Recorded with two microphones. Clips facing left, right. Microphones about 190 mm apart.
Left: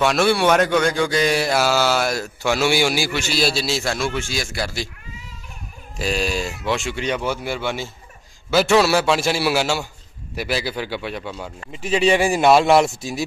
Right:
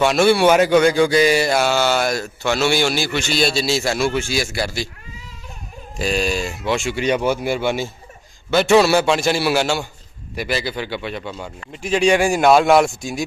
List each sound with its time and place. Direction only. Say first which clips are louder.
0.0 s mantra: right 3 dB; centre (ahead or behind)
5.9 s mantra: right 2 dB; centre (ahead or behind)
7.0 s speech: right 5 dB; 15° right (ahead or behind)
8.5 s mantra: right 2 dB; centre (ahead or behind)